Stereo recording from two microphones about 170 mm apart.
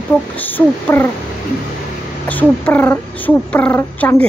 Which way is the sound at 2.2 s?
10° left (ahead or behind).